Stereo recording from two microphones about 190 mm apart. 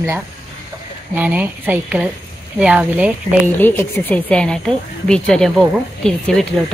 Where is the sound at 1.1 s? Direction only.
10° right (ahead or behind).